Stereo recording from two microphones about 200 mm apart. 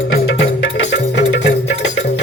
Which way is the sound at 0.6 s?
65° left (ahead or behind).